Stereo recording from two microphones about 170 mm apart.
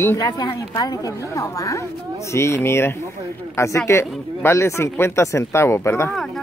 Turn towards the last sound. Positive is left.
turn(degrees=15)  # may be behind; listen again after turning